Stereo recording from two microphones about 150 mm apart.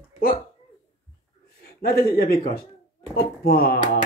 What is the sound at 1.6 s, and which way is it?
Speech, 90° left.